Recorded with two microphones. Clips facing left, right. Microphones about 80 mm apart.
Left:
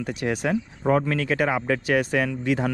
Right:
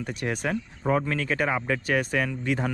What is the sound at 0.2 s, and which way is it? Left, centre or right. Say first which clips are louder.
Speech: left 4 dB; left.